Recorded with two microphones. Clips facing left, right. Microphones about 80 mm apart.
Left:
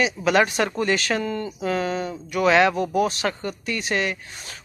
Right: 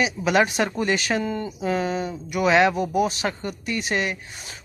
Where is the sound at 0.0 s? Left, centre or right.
Centre.